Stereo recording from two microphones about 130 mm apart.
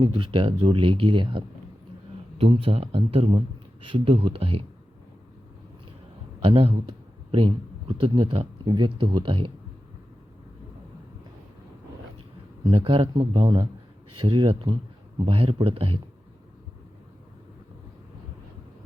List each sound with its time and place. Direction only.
0.0 s speech: 40° right (ahead or behind)
6.4 s speech: 45° right (ahead or behind)
12.7 s speech: 45° right (ahead or behind)